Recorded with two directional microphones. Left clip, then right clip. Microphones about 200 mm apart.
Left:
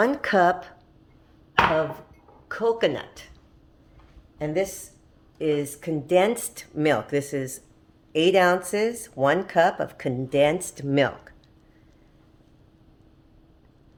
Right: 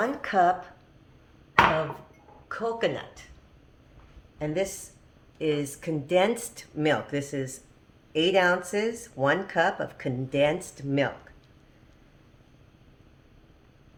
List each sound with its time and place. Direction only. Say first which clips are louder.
0.0 s speech: left 3 dB; 50° left (ahead or behind)
2.5 s speech: left 5 dB; 35° left (ahead or behind)
4.4 s a woman's voice: left 3 dB; 35° left (ahead or behind); by 11.3 s 50° left (ahead or behind)